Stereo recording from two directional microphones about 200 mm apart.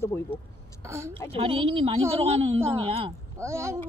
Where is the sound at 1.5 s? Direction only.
25° right (ahead or behind).